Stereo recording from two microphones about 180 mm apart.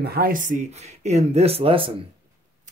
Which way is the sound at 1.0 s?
40° right (ahead or behind).